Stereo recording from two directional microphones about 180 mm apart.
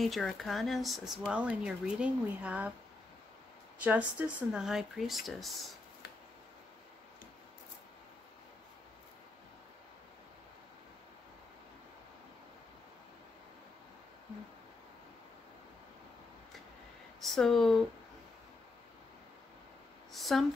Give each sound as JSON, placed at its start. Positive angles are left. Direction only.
{"t": 0.0, "sound": "speech", "side_deg": 0}
{"t": 3.8, "sound": "speech", "side_deg": -10}
{"t": 17.2, "sound": "speech", "side_deg": 0}
{"t": 20.1, "sound": "a sound", "side_deg": 0}